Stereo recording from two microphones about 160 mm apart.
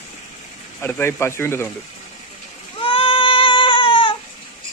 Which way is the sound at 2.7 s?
35° left (ahead or behind).